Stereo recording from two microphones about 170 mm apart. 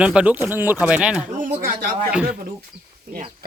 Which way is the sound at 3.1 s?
60° right (ahead or behind).